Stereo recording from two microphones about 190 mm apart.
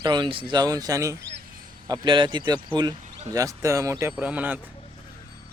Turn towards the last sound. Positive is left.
turn(degrees=-10)  # may be behind; listen again after turning